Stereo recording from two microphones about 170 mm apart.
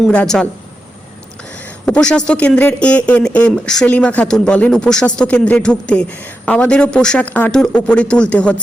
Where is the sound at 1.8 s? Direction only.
5° left (ahead or behind).